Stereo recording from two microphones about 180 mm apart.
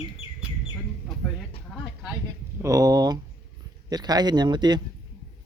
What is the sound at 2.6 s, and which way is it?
A man's voice, 20° right (ahead or behind).